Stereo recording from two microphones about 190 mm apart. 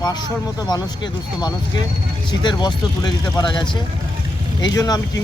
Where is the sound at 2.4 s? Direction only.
25° left (ahead or behind).